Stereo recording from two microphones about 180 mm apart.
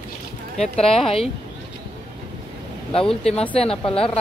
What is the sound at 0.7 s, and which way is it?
Speech, 35° left (ahead or behind).